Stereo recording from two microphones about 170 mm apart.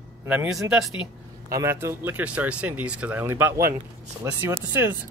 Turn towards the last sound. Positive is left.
turn(degrees=-10)  # may be behind; listen again after turning